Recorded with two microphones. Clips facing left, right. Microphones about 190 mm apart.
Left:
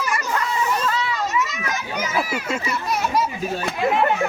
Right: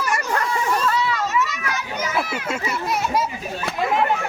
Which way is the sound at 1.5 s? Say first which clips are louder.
Even; 20° left (ahead or behind).